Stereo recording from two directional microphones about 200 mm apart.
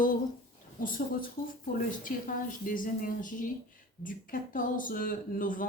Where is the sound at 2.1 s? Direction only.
40° left (ahead or behind).